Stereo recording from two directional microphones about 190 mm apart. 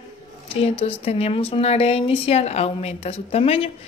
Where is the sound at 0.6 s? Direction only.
30° left (ahead or behind).